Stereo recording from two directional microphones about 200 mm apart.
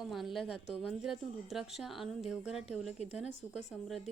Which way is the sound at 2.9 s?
35° left (ahead or behind).